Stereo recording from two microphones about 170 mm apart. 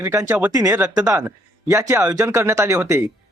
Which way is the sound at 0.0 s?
20° right (ahead or behind).